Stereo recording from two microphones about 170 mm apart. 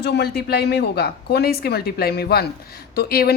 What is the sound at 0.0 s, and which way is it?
A woman's voice, 70° left (ahead or behind).